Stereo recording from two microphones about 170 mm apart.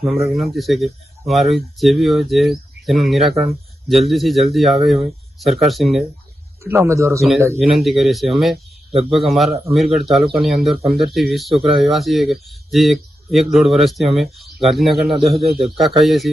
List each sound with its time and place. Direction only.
0.0 s speech: centre (ahead or behind)
6.6 s a man's voice: 15° right (ahead or behind)
7.6 s speech: centre (ahead or behind)